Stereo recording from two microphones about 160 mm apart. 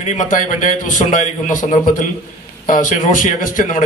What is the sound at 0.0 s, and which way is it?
A man's voice, 50° left (ahead or behind).